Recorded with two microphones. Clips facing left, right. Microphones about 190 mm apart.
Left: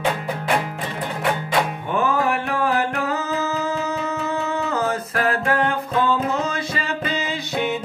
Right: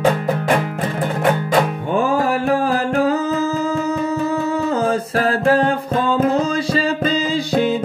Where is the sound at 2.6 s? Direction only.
30° right (ahead or behind).